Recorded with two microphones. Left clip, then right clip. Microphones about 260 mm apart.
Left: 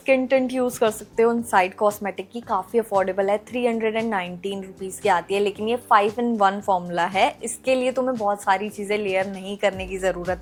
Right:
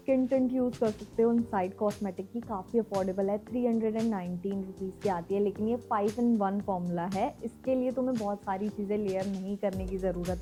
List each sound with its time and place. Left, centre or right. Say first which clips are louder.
0.0 s a woman's voice: left 9 dB; centre